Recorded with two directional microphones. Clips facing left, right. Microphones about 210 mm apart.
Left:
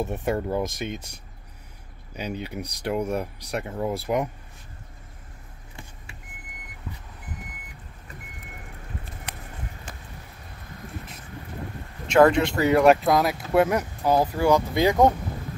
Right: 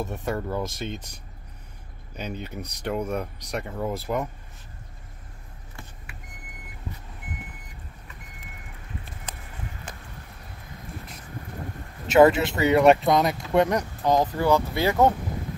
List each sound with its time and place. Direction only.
0.0 s speech: 20° left (ahead or behind)
2.1 s speech: 10° left (ahead or behind)
9.3 s a sound: 70° left (ahead or behind)
12.1 s speech: 5° right (ahead or behind); by 15.1 s 15° left (ahead or behind)